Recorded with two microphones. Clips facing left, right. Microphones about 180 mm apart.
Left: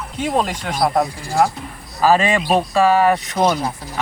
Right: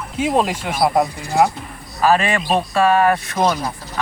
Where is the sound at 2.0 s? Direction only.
25° left (ahead or behind).